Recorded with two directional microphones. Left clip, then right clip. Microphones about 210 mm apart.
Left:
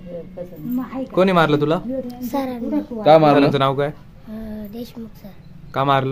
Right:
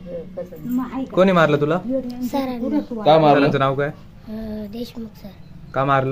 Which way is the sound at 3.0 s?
45° left (ahead or behind).